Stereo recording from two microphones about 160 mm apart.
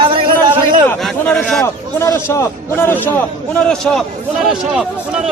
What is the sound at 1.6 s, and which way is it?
A man's voice, 15° left (ahead or behind).